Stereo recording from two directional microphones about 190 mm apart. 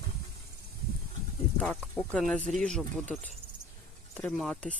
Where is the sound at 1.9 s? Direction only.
5° left (ahead or behind).